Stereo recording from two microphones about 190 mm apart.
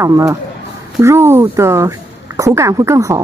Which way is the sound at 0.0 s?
15° right (ahead or behind).